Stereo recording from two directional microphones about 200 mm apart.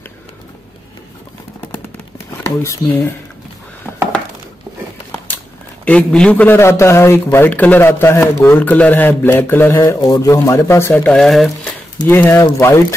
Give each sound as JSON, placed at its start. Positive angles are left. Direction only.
{"t": 2.6, "sound": "a man's voice", "side_deg": 15}
{"t": 5.9, "sound": "a man's voice", "side_deg": 5}
{"t": 12.0, "sound": "a man's voice", "side_deg": 10}